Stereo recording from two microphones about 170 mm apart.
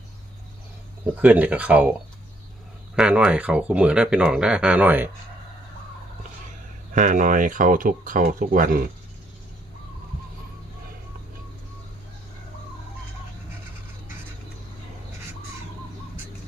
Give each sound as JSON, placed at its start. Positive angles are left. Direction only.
{"t": 1.0, "sound": "speech", "side_deg": -10}
{"t": 6.9, "sound": "speech", "side_deg": -50}